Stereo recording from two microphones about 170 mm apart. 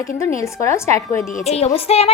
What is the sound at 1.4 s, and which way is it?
Speech, 40° left (ahead or behind).